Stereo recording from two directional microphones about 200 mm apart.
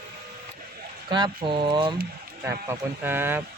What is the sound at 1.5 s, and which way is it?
Speech, 25° right (ahead or behind).